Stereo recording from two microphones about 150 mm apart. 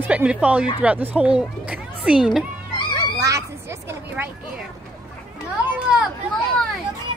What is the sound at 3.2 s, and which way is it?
Children playing, 20° right (ahead or behind).